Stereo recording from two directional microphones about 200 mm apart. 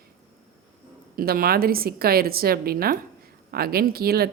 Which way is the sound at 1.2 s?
45° right (ahead or behind).